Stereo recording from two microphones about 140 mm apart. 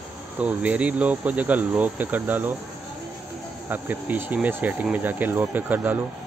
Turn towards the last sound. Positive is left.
turn(degrees=-15)  # may be behind; listen again after turning